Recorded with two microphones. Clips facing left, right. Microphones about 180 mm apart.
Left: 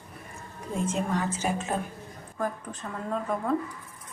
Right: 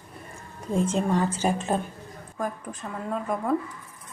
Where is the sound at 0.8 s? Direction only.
30° right (ahead or behind).